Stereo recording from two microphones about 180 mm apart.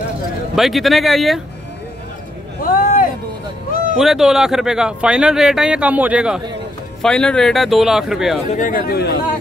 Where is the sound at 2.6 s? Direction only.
50° left (ahead or behind).